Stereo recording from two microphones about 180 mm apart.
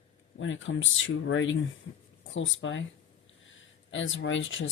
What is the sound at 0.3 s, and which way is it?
Speech, 90° left.